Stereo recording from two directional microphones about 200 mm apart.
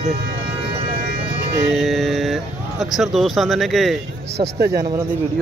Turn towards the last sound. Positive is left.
turn(degrees=-50)  # may be behind; listen again after turning